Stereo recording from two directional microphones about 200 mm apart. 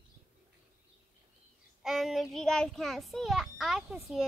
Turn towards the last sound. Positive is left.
turn(degrees=0)  # may be behind; listen again after turning